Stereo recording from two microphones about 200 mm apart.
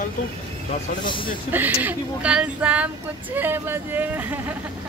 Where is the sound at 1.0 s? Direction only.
25° left (ahead or behind).